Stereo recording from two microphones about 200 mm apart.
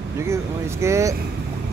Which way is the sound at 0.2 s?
15° right (ahead or behind).